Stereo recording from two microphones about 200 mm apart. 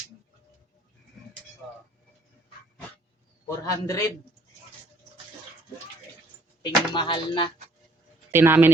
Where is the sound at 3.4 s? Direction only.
15° left (ahead or behind).